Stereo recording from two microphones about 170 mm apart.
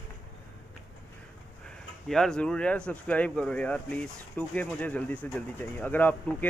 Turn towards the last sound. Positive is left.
turn(degrees=10)  # may be behind; listen again after turning